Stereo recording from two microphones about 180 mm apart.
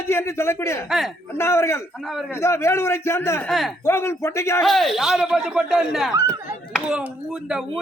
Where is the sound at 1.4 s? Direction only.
15° left (ahead or behind).